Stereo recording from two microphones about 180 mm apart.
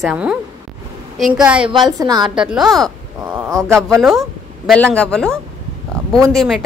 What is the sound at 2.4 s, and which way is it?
A woman's voice, 5° right (ahead or behind).